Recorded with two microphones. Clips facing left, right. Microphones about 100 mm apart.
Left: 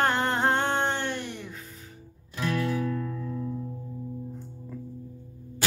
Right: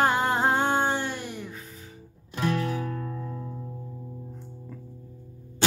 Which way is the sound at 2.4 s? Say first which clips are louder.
Even; 30° right (ahead or behind).